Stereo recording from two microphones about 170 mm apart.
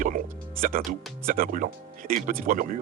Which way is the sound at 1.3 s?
55° right (ahead or behind).